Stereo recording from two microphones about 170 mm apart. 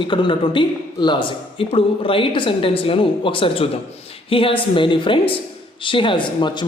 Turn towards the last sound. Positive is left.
turn(degrees=30)  # may be behind; listen again after turning